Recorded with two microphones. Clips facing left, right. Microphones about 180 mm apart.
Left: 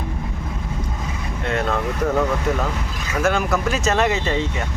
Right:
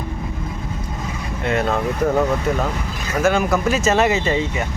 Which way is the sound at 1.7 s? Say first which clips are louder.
Right 1 dB; 15° right (ahead or behind).